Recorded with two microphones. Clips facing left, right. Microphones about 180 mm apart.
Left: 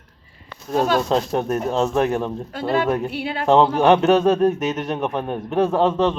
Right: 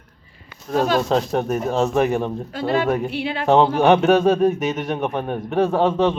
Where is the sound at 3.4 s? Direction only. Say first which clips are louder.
Even; centre (ahead or behind).